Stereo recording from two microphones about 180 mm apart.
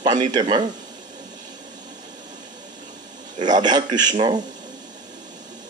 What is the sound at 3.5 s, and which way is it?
Speech, 25° right (ahead or behind).